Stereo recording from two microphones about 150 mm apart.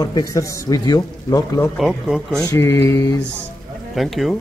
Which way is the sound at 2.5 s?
15° left (ahead or behind).